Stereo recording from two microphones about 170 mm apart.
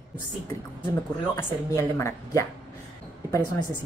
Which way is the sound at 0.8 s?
20° left (ahead or behind).